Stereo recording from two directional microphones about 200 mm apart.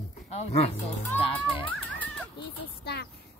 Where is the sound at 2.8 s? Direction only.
55° left (ahead or behind).